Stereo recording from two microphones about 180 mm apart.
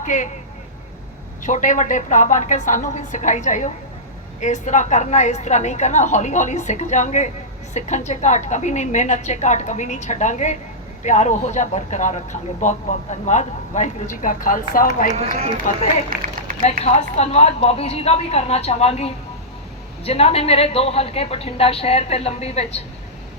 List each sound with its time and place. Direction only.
0.0 s speech: 45° left (ahead or behind)
1.5 s a woman's voice: 45° left (ahead or behind)
16.0 s a sound: 45° right (ahead or behind)
16.8 s a woman's voice: 35° left (ahead or behind)